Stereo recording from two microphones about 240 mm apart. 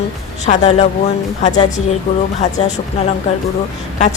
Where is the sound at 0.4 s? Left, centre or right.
Left.